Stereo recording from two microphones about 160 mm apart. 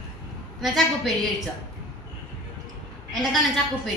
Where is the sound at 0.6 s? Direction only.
Centre (ahead or behind).